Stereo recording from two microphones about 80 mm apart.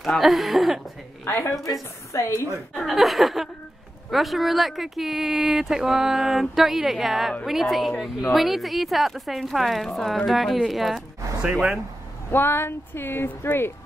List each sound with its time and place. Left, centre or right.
0.2 s speech: centre
1.2 s a woman's voice: left
2.7 s speech: centre
12.3 s speech: left